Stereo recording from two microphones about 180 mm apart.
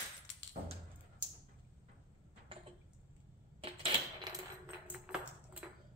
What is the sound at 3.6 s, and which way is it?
Typewriter, 30° right (ahead or behind).